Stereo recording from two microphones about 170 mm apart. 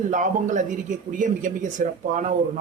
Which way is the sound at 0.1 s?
45° right (ahead or behind).